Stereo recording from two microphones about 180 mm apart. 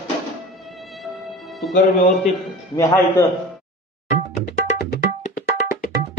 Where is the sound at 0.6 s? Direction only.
Centre (ahead or behind).